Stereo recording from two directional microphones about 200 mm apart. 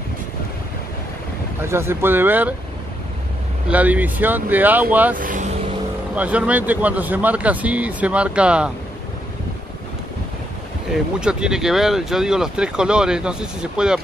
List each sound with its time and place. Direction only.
1.7 s speech: 10° right (ahead or behind)
3.6 s speech: 5° right (ahead or behind)
5.1 s speech: 40° right (ahead or behind)
6.1 s speech: 5° right (ahead or behind)
11.1 s speech: 5° right (ahead or behind)